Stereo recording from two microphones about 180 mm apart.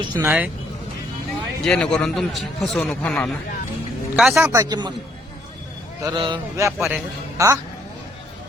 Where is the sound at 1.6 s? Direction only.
5° left (ahead or behind).